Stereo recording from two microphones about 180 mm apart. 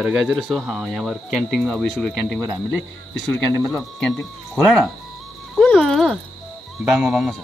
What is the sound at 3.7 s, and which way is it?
Speech, 5° left (ahead or behind).